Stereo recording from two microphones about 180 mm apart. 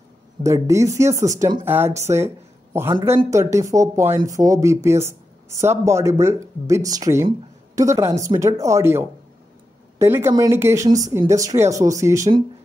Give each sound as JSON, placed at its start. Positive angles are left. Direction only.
{"t": 0.4, "sound": "speech", "side_deg": -15}